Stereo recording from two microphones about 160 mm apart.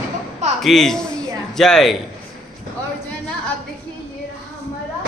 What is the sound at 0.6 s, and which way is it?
A man's voice, centre (ahead or behind).